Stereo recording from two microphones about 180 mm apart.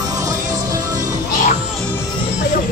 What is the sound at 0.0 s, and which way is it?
Music, 20° right (ahead or behind).